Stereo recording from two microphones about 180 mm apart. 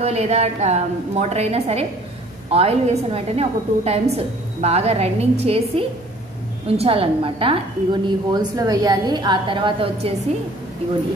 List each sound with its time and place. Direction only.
0.0 s a woman's voice: 35° right (ahead or behind)